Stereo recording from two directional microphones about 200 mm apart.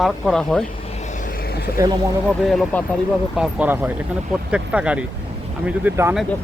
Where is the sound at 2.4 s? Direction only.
Centre (ahead or behind).